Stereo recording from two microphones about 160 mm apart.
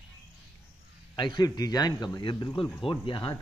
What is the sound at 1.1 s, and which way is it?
A man's voice, 30° left (ahead or behind).